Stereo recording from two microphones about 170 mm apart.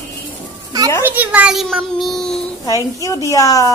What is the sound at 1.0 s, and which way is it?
A child's voice, 10° right (ahead or behind).